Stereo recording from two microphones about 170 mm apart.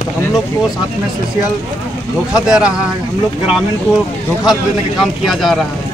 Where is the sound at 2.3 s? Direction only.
5° right (ahead or behind).